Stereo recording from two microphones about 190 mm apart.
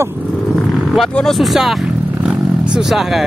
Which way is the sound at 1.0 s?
Centre (ahead or behind).